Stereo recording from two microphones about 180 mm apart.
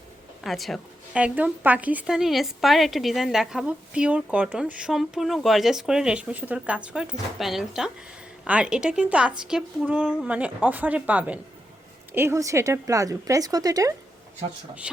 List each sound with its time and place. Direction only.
0.4 s a woman's voice: centre (ahead or behind); by 13.9 s 20° right (ahead or behind)